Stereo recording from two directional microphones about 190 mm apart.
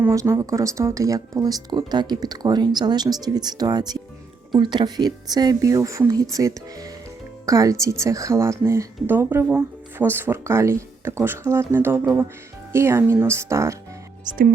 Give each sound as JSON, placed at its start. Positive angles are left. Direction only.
{"t": 0.0, "sound": "speech", "side_deg": -15}
{"t": 14.3, "sound": "speech", "side_deg": -45}